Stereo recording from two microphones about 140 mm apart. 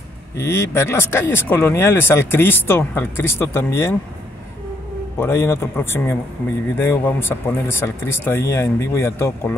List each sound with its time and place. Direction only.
0.4 s speech: 20° left (ahead or behind)
5.2 s speech: 15° left (ahead or behind)